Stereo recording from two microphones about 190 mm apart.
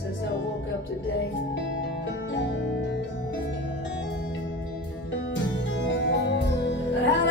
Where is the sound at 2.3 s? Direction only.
70° left (ahead or behind).